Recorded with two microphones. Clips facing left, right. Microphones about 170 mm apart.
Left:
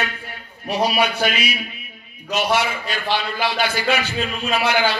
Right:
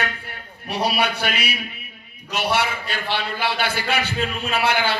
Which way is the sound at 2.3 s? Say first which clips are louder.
Left 2 dB; 60° right (ahead or behind).